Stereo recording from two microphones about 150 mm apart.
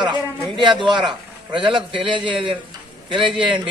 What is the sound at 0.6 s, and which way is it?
A man's voice, 30° right (ahead or behind).